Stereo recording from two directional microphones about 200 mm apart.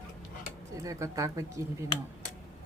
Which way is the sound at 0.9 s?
15° right (ahead or behind).